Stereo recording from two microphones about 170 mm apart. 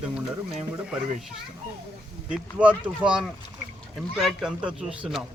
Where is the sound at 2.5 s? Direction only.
10° right (ahead or behind).